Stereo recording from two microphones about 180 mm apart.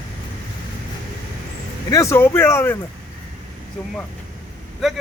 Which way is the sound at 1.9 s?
15° left (ahead or behind).